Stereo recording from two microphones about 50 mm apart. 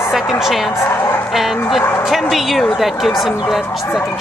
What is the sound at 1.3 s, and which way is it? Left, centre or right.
A woman's voice, centre.